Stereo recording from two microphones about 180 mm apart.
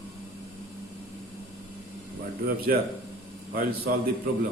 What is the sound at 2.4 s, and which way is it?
Speech, 60° right (ahead or behind).